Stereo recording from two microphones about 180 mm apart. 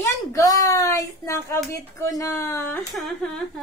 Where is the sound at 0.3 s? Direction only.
20° left (ahead or behind).